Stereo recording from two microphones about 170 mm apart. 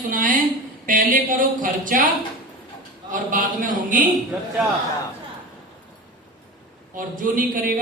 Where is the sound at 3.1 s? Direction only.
50° right (ahead or behind).